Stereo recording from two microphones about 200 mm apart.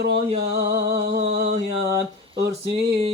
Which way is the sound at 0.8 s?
55° right (ahead or behind).